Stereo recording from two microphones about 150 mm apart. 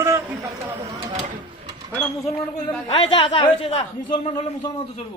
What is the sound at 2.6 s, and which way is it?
Speech, 30° left (ahead or behind).